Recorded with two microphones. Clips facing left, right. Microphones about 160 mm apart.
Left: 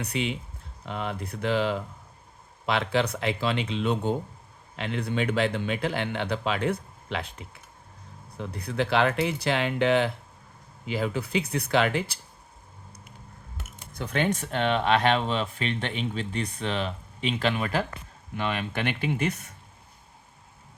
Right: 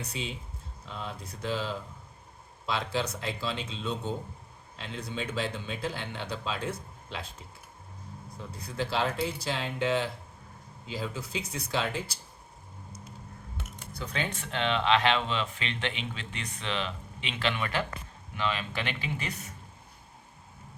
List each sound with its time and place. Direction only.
0.0 s speech: 65° left (ahead or behind)
14.0 s speech: 60° left (ahead or behind)
14.3 s speech: 45° left (ahead or behind)
18.3 s speech: 50° left (ahead or behind)